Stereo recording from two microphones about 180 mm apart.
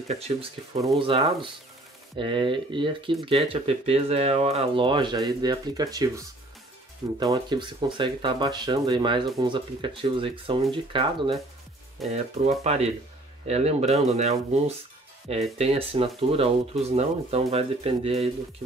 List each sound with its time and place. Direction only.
0.3 s speech: 35° right (ahead or behind)
0.7 s speech: 25° right (ahead or behind)